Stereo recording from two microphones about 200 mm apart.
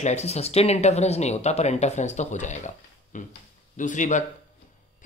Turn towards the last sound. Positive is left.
turn(degrees=40)  # may be behind; listen again after turning